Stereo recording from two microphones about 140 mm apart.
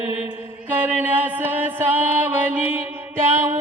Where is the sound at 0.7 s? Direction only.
15° right (ahead or behind).